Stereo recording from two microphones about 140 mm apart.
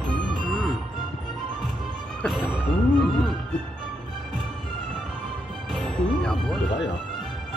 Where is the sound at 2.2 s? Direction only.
5° right (ahead or behind).